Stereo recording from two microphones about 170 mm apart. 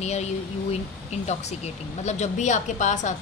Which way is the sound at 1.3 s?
40° left (ahead or behind).